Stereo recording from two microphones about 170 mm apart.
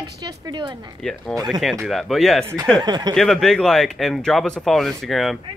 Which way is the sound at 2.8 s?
25° right (ahead or behind).